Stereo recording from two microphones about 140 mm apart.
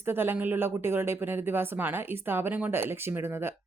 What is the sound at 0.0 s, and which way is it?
A woman's voice, 15° right (ahead or behind).